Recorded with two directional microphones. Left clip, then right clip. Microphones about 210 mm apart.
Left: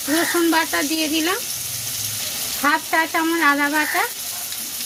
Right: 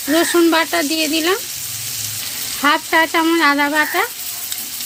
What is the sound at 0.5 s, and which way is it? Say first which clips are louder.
Speech: right 3 dB; 55° right (ahead or behind).